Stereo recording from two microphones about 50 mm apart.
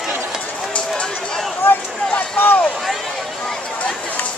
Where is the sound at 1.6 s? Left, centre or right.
Left.